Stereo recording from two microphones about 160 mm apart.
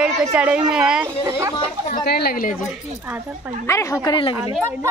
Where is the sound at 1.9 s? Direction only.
80° left.